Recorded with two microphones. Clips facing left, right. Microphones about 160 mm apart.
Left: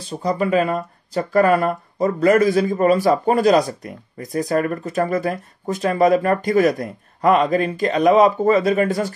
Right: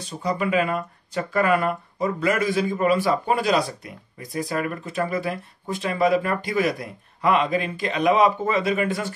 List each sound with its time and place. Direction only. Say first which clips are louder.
0.0 s speech: left 4 dB; 35° left (ahead or behind)